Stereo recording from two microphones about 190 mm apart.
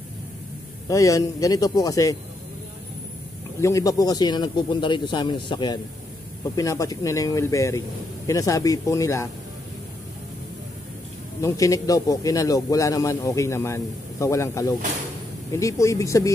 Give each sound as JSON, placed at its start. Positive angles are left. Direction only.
{"t": 0.8, "sound": "speech", "side_deg": 15}
{"t": 3.6, "sound": "speech", "side_deg": 15}
{"t": 11.4, "sound": "speech", "side_deg": 15}